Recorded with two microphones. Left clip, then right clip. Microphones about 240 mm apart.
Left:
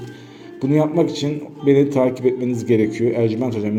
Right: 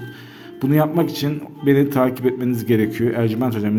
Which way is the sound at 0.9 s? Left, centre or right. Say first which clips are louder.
Left 2 dB; right.